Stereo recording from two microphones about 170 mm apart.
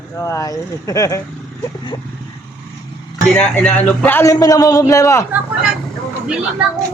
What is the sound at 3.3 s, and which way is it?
A man's voice, 5° left (ahead or behind).